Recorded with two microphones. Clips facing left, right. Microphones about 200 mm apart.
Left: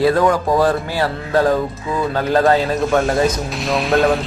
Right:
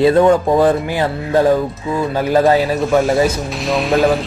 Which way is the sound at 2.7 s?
Centre (ahead or behind).